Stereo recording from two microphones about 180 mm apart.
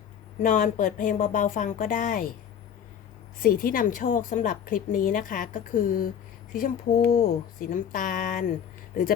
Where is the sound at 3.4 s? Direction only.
55° left (ahead or behind).